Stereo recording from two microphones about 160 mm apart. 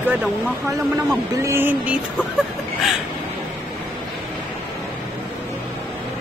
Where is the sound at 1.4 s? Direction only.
15° right (ahead or behind).